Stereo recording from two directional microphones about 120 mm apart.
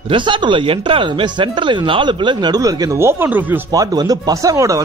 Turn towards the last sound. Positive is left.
turn(degrees=-25)  # may be behind; listen again after turning